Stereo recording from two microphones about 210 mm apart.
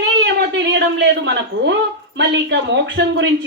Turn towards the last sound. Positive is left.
turn(degrees=-60)  # may be behind; listen again after turning